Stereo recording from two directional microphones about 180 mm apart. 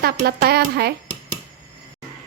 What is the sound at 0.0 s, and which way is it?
Speech, 60° right (ahead or behind).